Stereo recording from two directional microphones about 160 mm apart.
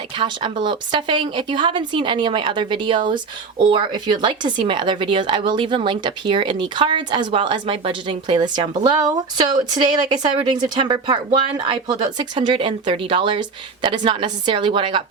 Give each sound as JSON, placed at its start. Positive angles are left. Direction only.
{"t": 0.2, "sound": "a woman's voice", "side_deg": -30}